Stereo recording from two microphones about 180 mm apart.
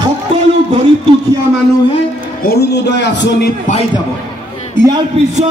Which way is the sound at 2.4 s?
65° left (ahead or behind).